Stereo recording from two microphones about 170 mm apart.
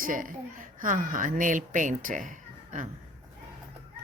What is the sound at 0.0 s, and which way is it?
Speech, 50° right (ahead or behind).